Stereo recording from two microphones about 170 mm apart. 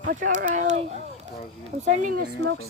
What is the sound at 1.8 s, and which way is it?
Speech, 50° right (ahead or behind).